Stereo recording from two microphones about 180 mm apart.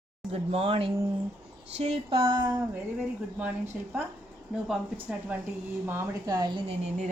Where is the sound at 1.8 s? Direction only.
30° right (ahead or behind).